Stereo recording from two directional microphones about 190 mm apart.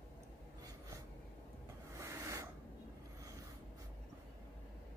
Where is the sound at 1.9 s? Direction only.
15° right (ahead or behind).